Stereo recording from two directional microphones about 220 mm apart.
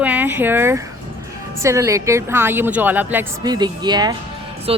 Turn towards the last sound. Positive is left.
turn(degrees=-25)  # may be behind; listen again after turning